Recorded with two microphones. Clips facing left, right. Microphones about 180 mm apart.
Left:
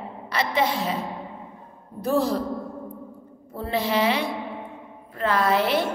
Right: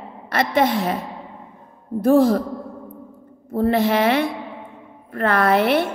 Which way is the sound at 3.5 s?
50° right (ahead or behind).